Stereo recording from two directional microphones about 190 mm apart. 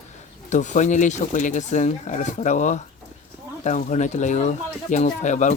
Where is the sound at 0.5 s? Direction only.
40° left (ahead or behind).